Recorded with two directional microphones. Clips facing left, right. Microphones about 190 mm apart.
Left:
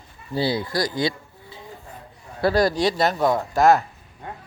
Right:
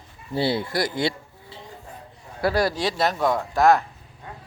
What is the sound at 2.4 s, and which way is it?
Speech, 10° right (ahead or behind).